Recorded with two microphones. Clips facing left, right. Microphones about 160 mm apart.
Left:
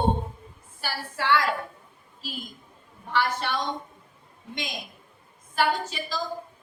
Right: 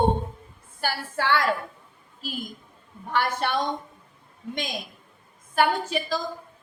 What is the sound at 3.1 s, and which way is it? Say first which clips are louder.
Speech: right 2 dB; 50° right (ahead or behind).